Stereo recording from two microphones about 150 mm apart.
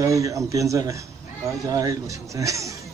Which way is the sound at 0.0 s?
20° right (ahead or behind).